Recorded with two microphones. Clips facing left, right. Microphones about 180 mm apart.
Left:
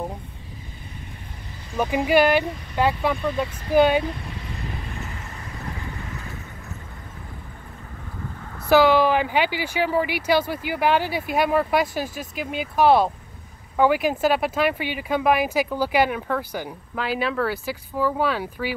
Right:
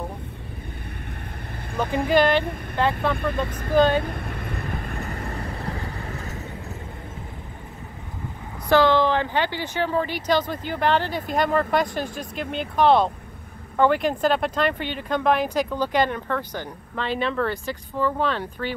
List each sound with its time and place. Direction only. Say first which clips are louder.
2.0 s speech: left 1 dB; 10° left (ahead or behind)
3.4 s speech: right 4 dB; 50° right (ahead or behind)
3.7 s speech: left 1 dB; 10° left (ahead or behind)
4.0 s vehicle: even; 55° right (ahead or behind)
5.4 s vehicle: right 4 dB; 35° right (ahead or behind)
8.6 s speech: left 2 dB; 10° left (ahead or behind)